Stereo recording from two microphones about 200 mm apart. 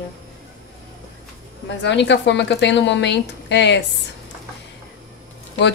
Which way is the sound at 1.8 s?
60° left (ahead or behind).